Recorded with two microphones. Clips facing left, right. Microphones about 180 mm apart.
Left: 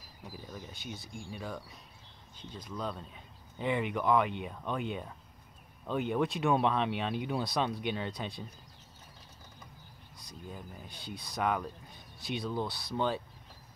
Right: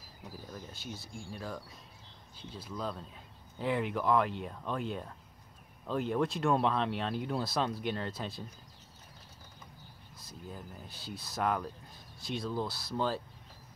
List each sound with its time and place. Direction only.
0.5 s speech: centre (ahead or behind)
10.1 s speech: centre (ahead or behind)